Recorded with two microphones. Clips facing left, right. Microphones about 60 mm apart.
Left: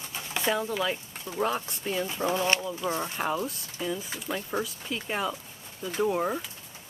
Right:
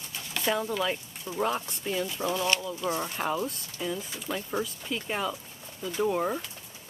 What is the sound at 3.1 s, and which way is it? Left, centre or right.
Speech, centre.